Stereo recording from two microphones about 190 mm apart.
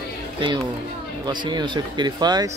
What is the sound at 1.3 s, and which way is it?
Speech, 25° right (ahead or behind).